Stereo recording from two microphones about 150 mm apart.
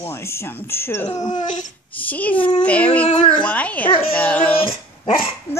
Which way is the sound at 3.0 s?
40° left (ahead or behind).